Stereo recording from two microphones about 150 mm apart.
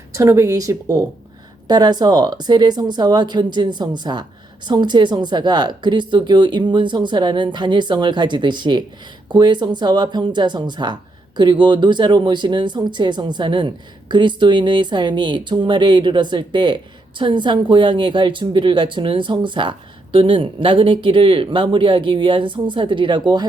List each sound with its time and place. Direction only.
0.1 s speech: 20° right (ahead or behind)